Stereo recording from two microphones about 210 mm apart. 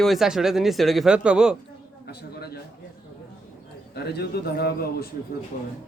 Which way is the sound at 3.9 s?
50° left (ahead or behind).